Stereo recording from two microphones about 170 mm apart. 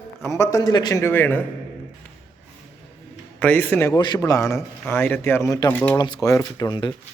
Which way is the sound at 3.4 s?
10° left (ahead or behind).